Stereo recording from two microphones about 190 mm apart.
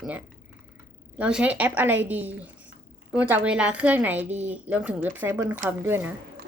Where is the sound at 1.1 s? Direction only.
5° right (ahead or behind).